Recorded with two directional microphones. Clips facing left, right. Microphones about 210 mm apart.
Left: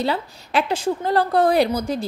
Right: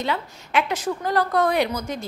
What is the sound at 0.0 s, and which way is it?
A woman's voice, 35° left (ahead or behind).